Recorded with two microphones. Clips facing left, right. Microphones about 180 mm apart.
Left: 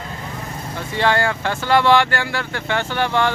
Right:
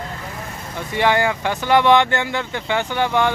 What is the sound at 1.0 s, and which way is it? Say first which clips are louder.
Speech: right 1 dB; 15° right (ahead or behind).